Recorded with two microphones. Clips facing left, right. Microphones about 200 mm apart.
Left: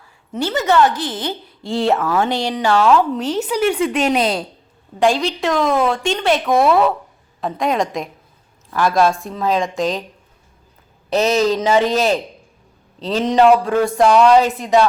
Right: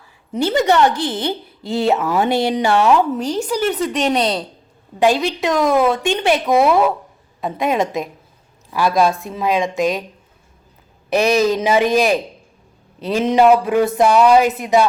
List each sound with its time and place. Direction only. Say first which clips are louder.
0.4 s a woman's voice: right 1 dB; 20° right (ahead or behind)
2.5 s a woman's voice: left 3 dB; 20° right (ahead or behind)
3.1 s a woman's voice: even; 5° left (ahead or behind)
5.0 s a woman's voice: right 1 dB; 5° right (ahead or behind)
11.1 s a woman's voice: right 1 dB; 15° right (ahead or behind)